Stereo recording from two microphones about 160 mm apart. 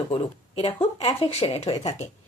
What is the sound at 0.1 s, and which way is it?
Speech, 35° left (ahead or behind).